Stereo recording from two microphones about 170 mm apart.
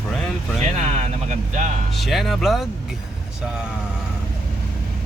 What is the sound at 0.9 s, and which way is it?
Vehicle, 45° right (ahead or behind).